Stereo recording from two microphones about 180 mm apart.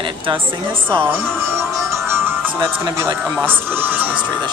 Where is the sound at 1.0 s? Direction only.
15° right (ahead or behind).